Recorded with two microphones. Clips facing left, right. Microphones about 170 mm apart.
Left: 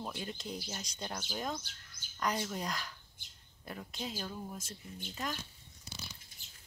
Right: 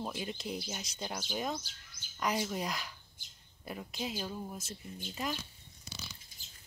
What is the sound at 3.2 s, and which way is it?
Speech, 60° left (ahead or behind).